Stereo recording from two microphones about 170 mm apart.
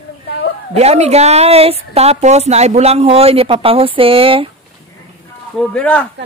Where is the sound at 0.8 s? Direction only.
40° right (ahead or behind).